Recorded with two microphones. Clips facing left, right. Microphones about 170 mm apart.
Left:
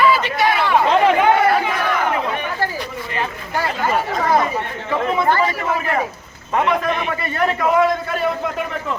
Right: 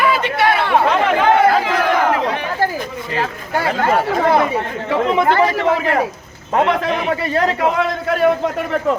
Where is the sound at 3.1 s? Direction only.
85° right.